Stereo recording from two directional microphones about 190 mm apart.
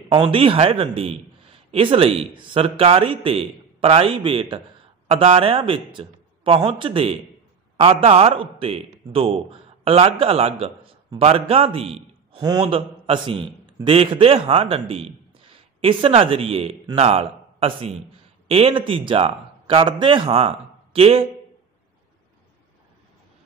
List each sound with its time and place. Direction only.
0.1 s a man's voice: 30° right (ahead or behind)